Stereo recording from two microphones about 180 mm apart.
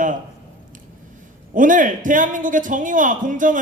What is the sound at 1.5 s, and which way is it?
A man's voice, 45° right (ahead or behind).